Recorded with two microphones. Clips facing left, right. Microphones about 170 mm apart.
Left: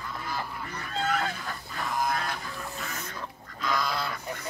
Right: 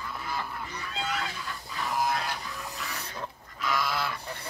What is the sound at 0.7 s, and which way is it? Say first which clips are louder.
Fowl: left 6 dB; 50° left (ahead or behind).